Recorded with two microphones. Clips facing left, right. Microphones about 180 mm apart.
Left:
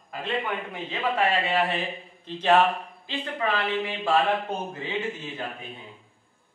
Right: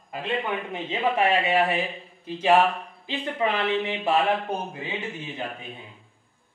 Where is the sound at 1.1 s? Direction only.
15° right (ahead or behind).